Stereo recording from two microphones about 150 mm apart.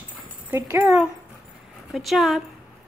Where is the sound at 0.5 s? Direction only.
20° right (ahead or behind).